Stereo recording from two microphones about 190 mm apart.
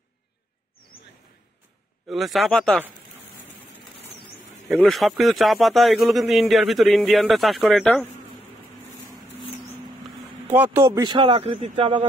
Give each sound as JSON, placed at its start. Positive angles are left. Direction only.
{"t": 2.0, "sound": "a man's voice", "side_deg": 0}
{"t": 4.7, "sound": "a man's voice", "side_deg": 0}
{"t": 10.4, "sound": "a man's voice", "side_deg": -10}